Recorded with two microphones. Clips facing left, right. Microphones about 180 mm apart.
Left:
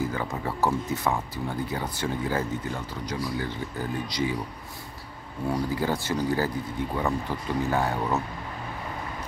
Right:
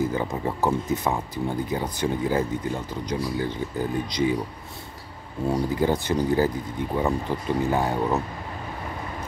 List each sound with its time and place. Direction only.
0.1 s speech: 20° right (ahead or behind)
5.5 s speech: 20° right (ahead or behind)